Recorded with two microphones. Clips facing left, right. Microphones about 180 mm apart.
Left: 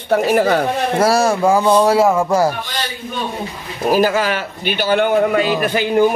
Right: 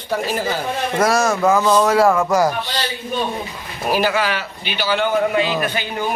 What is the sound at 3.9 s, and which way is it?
A man's voice, 40° left (ahead or behind).